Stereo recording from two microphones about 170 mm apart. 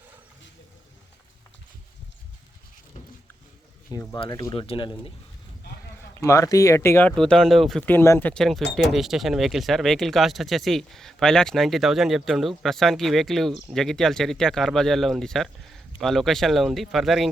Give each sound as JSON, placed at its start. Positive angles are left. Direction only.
{"t": 4.2, "sound": "speech", "side_deg": 25}
{"t": 6.1, "sound": "speech", "side_deg": 15}
{"t": 7.2, "sound": "speech", "side_deg": 5}
{"t": 8.3, "sound": "speech", "side_deg": 0}